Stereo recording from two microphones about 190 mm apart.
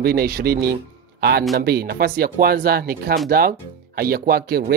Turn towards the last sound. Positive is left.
turn(degrees=-55)  # may be behind; listen again after turning